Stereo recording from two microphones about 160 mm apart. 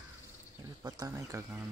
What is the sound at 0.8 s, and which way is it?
Speech, 25° right (ahead or behind).